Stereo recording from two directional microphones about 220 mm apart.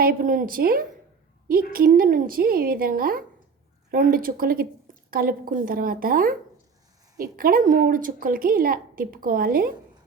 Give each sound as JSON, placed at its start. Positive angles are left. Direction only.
{"t": 0.0, "sound": "a woman's voice", "side_deg": -40}